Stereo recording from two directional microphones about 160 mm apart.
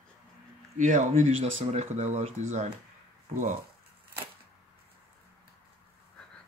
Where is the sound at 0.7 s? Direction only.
50° right (ahead or behind).